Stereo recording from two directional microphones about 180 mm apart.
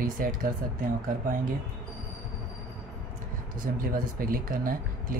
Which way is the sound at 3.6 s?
50° right (ahead or behind).